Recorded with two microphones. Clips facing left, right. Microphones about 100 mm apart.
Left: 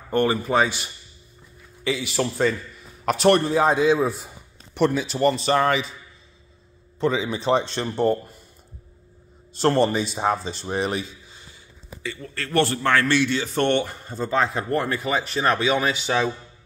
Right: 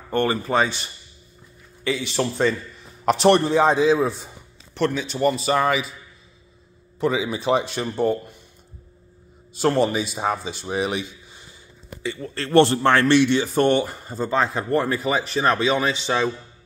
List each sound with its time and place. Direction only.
0.1 s a man's voice: 10° left (ahead or behind)
1.9 s a man's voice: 10° left (ahead or behind); by 5.9 s 5° right (ahead or behind)
7.0 s a man's voice: 10° right (ahead or behind)
9.5 s speech: 5° right (ahead or behind)
12.0 s a man's voice: 25° right (ahead or behind)
13.5 s speech: 10° right (ahead or behind)